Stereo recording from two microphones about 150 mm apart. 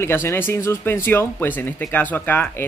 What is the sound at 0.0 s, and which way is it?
Speech, 15° left (ahead or behind).